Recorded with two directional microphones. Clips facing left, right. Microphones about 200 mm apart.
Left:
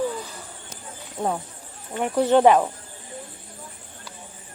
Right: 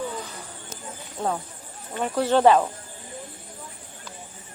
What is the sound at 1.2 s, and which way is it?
Speech, 15° left (ahead or behind).